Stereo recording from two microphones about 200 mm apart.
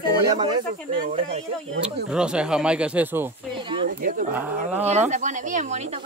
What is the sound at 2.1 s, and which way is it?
Speech, 5° right (ahead or behind).